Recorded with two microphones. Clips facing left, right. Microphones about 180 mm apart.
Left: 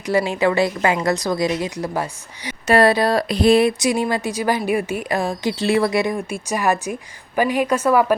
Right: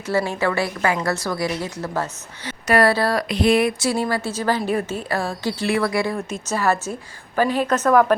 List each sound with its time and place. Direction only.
0.1 s a woman's voice: 15° left (ahead or behind)
2.6 s speech: 25° left (ahead or behind)
3.2 s a sound: 35° left (ahead or behind)
3.8 s a woman's voice: 15° left (ahead or behind)